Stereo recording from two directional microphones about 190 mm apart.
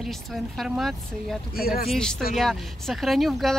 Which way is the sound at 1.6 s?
50° left (ahead or behind).